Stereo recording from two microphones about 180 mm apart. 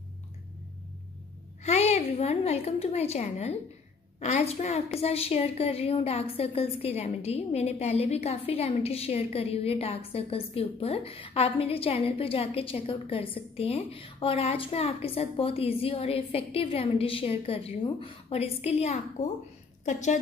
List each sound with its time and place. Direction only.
1.6 s a woman's voice: 40° left (ahead or behind)